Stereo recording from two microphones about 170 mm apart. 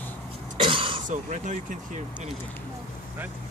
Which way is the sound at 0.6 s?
30° right (ahead or behind).